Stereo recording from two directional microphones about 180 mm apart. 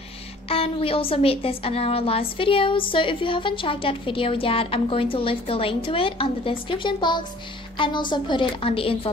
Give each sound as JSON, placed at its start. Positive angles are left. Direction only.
{"t": 0.5, "sound": "a woman's voice", "side_deg": 30}